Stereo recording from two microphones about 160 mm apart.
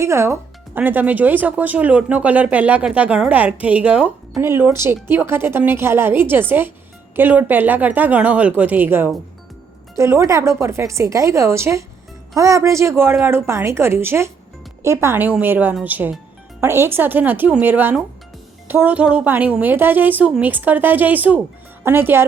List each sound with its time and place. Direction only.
0.0 s speech: 20° right (ahead or behind)